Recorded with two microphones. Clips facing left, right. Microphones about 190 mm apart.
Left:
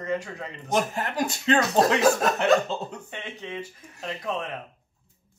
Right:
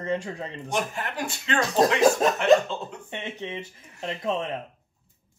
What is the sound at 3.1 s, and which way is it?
Speech, 25° right (ahead or behind).